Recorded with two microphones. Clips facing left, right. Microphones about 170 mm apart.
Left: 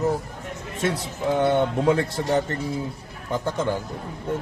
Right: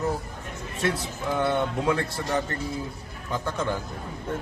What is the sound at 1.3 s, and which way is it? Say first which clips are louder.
Speech: left 4 dB; 25° left (ahead or behind).